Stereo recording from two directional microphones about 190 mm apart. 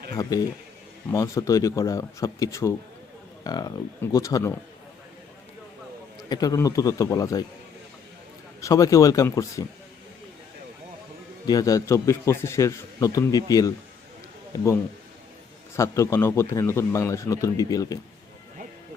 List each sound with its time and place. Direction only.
0.1 s a man's voice: 20° left (ahead or behind)
6.2 s a man's voice: 20° left (ahead or behind)
8.6 s a man's voice: 20° left (ahead or behind)
11.4 s a man's voice: 20° left (ahead or behind)
15.7 s a man's voice: 15° left (ahead or behind)